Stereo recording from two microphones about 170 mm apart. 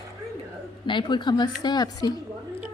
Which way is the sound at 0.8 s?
30° left (ahead or behind).